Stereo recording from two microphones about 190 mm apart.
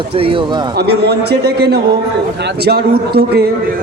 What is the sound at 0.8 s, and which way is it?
A man's voice, 60° right (ahead or behind).